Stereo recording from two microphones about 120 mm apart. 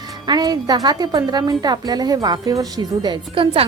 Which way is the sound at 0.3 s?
35° right (ahead or behind).